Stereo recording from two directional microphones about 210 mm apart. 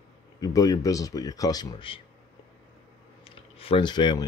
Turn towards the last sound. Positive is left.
turn(degrees=20)  # may be behind; listen again after turning